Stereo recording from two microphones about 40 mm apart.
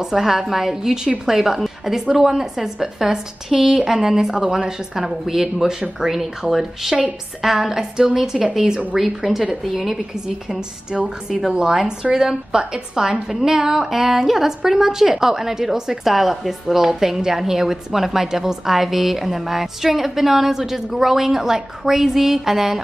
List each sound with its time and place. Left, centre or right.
0.0 s a woman's voice: centre
8.9 s a woman's voice: centre